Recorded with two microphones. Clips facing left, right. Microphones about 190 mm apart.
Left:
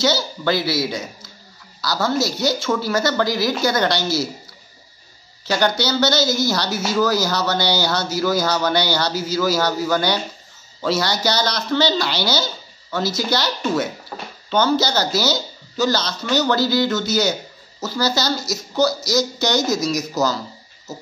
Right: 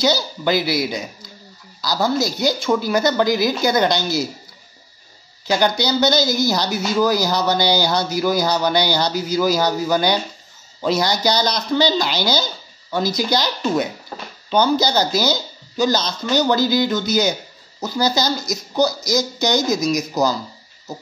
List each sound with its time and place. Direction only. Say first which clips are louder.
0.0 s speech: right 1 dB; 15° right (ahead or behind)
5.5 s speech: right 1 dB; 15° right (ahead or behind)